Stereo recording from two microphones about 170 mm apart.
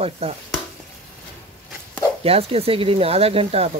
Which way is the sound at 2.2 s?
35° right (ahead or behind).